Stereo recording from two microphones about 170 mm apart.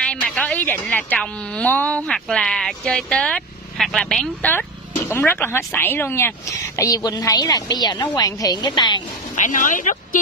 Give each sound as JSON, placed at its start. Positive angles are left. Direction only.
{"t": 0.0, "sound": "a woman's voice", "side_deg": 5}
{"t": 9.4, "sound": "speech", "side_deg": 50}